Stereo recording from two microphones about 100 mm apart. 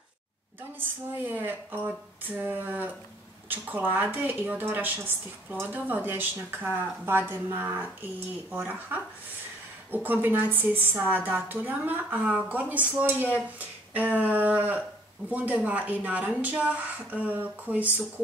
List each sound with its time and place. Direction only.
0.7 s a woman's voice: 20° right (ahead or behind)